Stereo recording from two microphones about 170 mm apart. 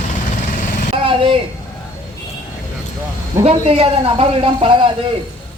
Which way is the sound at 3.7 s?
35° right (ahead or behind).